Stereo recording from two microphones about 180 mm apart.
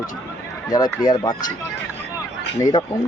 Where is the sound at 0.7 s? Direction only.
20° left (ahead or behind).